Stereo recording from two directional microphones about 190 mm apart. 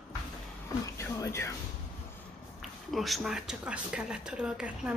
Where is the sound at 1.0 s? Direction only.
15° left (ahead or behind).